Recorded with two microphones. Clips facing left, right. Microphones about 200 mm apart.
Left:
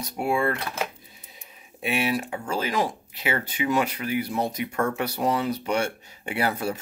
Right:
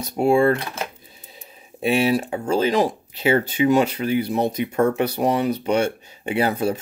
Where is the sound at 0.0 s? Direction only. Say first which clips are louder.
Right 8 dB; 30° right (ahead or behind).